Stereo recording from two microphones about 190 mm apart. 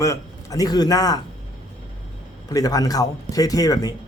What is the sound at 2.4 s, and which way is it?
Speech, 20° left (ahead or behind).